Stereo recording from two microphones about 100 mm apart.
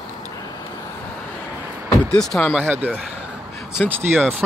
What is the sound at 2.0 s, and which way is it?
Speech, 5° left (ahead or behind).